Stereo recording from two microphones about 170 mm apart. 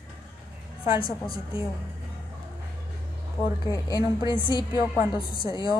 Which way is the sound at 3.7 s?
20° left (ahead or behind).